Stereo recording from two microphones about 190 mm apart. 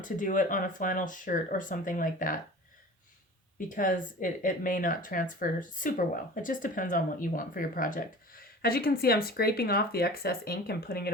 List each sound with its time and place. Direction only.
0.0 s speech: 45° left (ahead or behind)
3.7 s speech: 45° left (ahead or behind)